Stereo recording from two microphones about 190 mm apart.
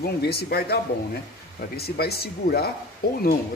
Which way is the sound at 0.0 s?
55° left (ahead or behind).